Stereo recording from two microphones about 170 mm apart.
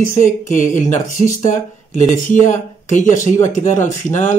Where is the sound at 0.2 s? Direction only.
50° left (ahead or behind).